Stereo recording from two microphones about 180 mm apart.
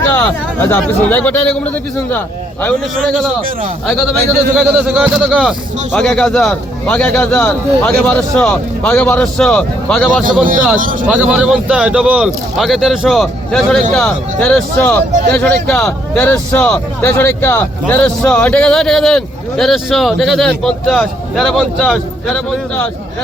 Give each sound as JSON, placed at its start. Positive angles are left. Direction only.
{"t": 0.2, "sound": "a man's voice", "side_deg": 10}
{"t": 3.8, "sound": "a man's voice", "side_deg": 0}
{"t": 10.8, "sound": "speech", "side_deg": -50}
{"t": 11.0, "sound": "a man's voice", "side_deg": -5}